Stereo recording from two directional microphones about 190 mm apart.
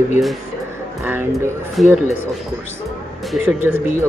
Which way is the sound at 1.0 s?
10° right (ahead or behind).